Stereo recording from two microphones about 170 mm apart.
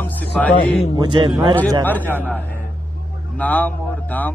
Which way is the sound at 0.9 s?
25° right (ahead or behind).